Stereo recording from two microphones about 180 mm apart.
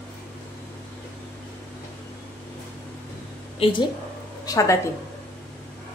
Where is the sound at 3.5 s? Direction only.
30° left (ahead or behind).